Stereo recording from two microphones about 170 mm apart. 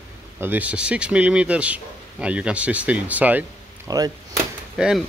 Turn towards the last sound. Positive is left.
turn(degrees=-5)  # may be behind; listen again after turning